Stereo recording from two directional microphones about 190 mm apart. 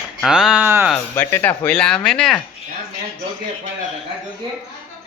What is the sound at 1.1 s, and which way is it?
Speech, 10° left (ahead or behind).